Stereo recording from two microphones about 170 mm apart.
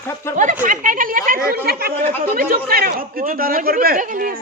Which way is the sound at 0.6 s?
50° right (ahead or behind).